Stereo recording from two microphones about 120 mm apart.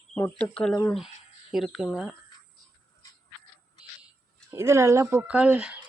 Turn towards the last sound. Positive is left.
turn(degrees=-10)  # may be behind; listen again after turning